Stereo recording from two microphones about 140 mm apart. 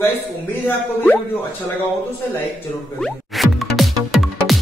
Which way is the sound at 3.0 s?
Centre (ahead or behind).